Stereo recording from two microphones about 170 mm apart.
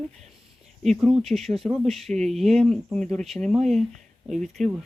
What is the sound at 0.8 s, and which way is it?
Speech, centre (ahead or behind).